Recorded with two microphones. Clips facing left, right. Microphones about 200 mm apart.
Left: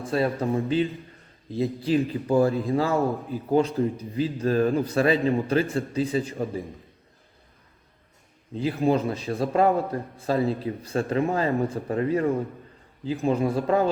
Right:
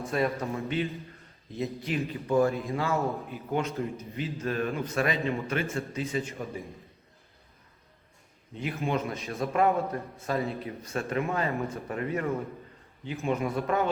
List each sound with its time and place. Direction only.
0.0 s a man's voice: 30° left (ahead or behind)
8.5 s a man's voice: 30° left (ahead or behind)